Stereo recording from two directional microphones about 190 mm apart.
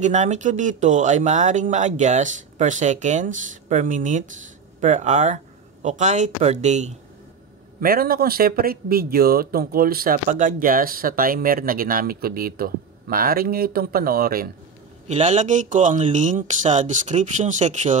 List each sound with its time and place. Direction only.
0.0 s speech: 40° right (ahead or behind)
7.8 s a man's voice: 50° right (ahead or behind)
15.0 s speech: 35° right (ahead or behind)